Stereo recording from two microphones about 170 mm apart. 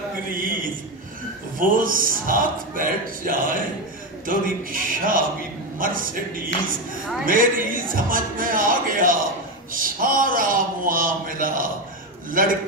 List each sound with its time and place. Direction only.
0.4 s a man's voice: 55° right (ahead or behind)